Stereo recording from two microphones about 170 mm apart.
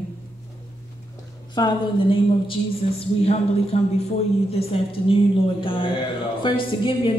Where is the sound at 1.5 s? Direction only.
30° left (ahead or behind).